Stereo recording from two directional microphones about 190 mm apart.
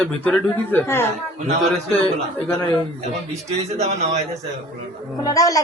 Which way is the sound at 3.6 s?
35° right (ahead or behind).